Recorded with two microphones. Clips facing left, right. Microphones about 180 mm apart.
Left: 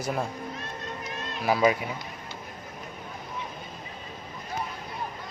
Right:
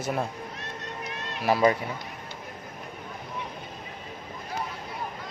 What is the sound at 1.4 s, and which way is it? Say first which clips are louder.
Speech: right 1 dB; 5° left (ahead or behind).